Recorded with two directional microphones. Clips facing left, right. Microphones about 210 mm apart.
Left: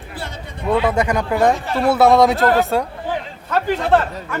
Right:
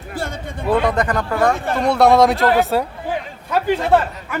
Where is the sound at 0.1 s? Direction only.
50° right (ahead or behind).